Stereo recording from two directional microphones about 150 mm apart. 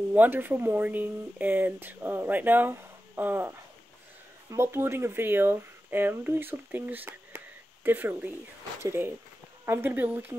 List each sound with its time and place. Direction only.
0.1 s speech: 10° right (ahead or behind)